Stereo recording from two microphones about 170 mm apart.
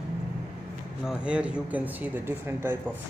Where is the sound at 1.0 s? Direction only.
5° right (ahead or behind).